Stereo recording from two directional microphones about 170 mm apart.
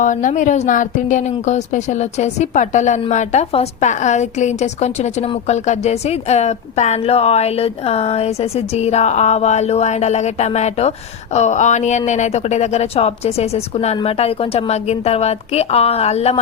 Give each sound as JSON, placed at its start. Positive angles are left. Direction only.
{"t": 0.0, "sound": "a woman's voice", "side_deg": 50}